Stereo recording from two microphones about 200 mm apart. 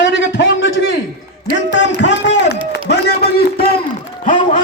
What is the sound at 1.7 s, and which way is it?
A man's voice, 60° left (ahead or behind).